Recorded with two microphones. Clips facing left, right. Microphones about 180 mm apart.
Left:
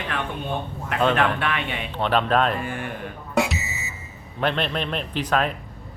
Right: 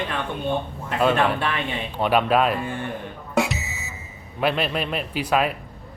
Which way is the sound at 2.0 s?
10° right (ahead or behind).